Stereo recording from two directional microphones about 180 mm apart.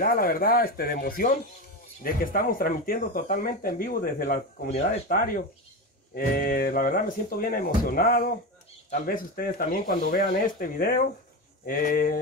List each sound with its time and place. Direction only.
0.0 s speech: 55° left (ahead or behind)
4.6 s speech: 40° left (ahead or behind)